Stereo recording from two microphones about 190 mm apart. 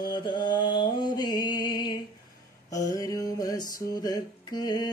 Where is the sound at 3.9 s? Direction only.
20° left (ahead or behind).